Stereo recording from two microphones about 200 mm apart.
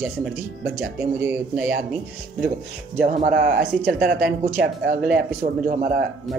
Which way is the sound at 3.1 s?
40° right (ahead or behind).